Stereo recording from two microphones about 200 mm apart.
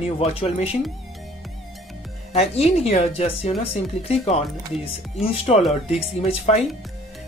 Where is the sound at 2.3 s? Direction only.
30° left (ahead or behind).